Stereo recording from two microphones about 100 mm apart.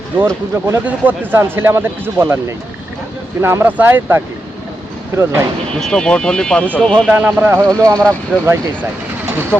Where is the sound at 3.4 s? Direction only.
25° right (ahead or behind).